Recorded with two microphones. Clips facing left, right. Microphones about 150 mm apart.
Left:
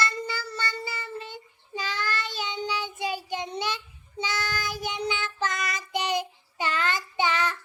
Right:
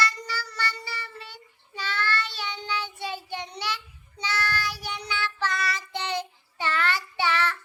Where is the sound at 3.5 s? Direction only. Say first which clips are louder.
Left 2 dB; 20° left (ahead or behind).